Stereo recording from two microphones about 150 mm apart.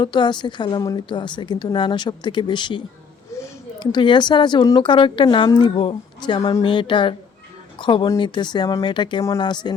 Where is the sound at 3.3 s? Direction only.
20° left (ahead or behind).